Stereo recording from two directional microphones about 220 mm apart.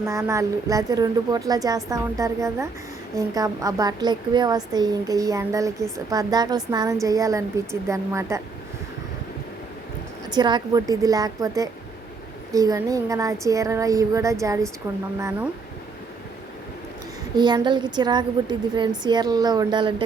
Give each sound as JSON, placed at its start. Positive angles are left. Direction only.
{"t": 0.0, "sound": "speech", "side_deg": -15}
{"t": 10.3, "sound": "speech", "side_deg": -20}
{"t": 17.3, "sound": "a woman's voice", "side_deg": -20}